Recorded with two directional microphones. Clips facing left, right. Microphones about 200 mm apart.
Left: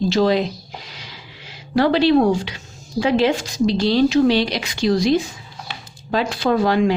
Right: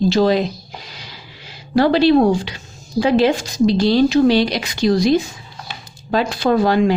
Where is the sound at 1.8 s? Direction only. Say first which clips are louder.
Right 2 dB; 35° right (ahead or behind).